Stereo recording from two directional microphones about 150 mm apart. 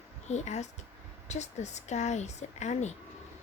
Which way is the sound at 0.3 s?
50° left (ahead or behind).